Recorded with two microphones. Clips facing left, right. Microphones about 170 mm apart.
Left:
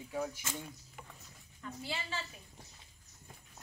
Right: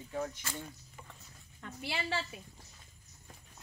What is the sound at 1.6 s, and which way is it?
Speech, 75° right (ahead or behind).